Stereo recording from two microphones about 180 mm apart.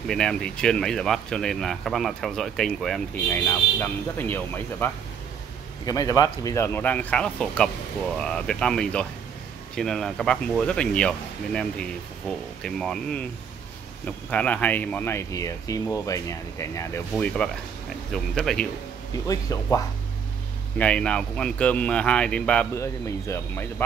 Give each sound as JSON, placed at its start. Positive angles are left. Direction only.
{"t": 0.1, "sound": "speech", "side_deg": 5}
{"t": 3.3, "sound": "speech", "side_deg": 10}
{"t": 17.1, "sound": "speech", "side_deg": 5}
{"t": 19.2, "sound": "speech", "side_deg": 20}
{"t": 20.7, "sound": "speech", "side_deg": 5}